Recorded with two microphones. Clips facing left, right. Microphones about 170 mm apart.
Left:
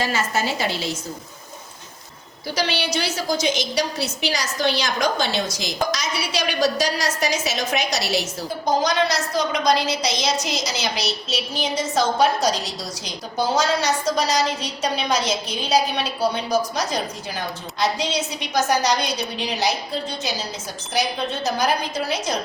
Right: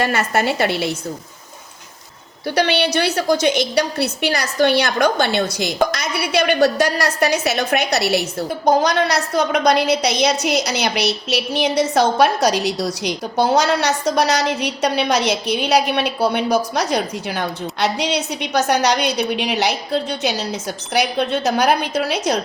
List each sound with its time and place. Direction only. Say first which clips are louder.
0.0 s a woman's voice: right 5 dB; 60° right (ahead or behind)
2.6 s a woman's voice: right 6 dB; 60° right (ahead or behind)